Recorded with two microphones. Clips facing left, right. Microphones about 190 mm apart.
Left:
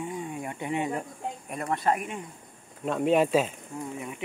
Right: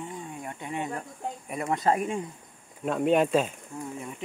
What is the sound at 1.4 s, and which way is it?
Speech, 10° right (ahead or behind).